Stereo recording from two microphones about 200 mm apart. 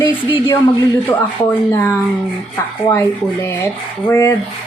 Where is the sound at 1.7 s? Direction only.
15° left (ahead or behind).